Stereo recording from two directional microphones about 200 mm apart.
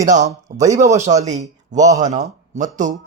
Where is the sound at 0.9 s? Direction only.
35° right (ahead or behind).